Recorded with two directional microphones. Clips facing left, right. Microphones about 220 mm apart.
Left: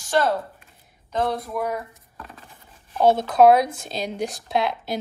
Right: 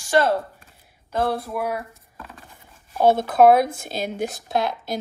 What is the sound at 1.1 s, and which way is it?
Speech, 10° right (ahead or behind).